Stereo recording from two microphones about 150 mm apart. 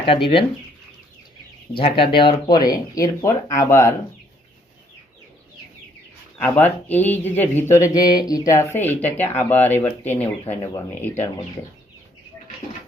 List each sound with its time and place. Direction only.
0.0 s speech: 35° left (ahead or behind)
1.7 s speech: 35° left (ahead or behind); by 3.9 s 20° left (ahead or behind)
6.4 s speech: 10° left (ahead or behind)